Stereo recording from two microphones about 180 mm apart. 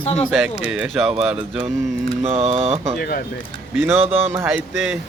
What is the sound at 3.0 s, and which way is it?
Speech, 55° left (ahead or behind).